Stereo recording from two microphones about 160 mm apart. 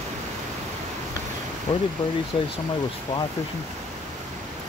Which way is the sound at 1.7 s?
40° left (ahead or behind).